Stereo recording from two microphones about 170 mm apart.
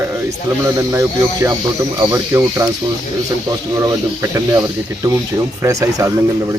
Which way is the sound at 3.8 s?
20° right (ahead or behind).